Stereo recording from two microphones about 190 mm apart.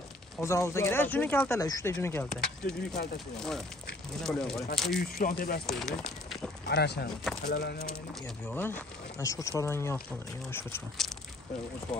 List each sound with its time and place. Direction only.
0.4 s speech: 15° left (ahead or behind)
2.4 s speech: 5° left (ahead or behind)
5.0 s speech: 50° left (ahead or behind)
5.7 s speech: centre (ahead or behind)
6.7 s speech: 60° left (ahead or behind)
8.5 s speech: 10° left (ahead or behind)